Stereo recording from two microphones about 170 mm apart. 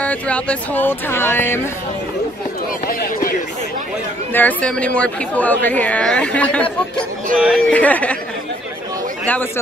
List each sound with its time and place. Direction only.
0.0 s speech: 10° left (ahead or behind)
2.9 s speech: 55° left (ahead or behind)
4.3 s speech: 10° left (ahead or behind)